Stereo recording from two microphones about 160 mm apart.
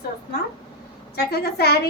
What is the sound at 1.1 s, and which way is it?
Speech, 80° left.